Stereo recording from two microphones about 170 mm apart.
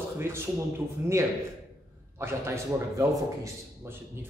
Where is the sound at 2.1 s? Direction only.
15° right (ahead or behind).